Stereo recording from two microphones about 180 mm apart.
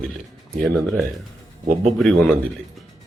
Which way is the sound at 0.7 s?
Centre (ahead or behind).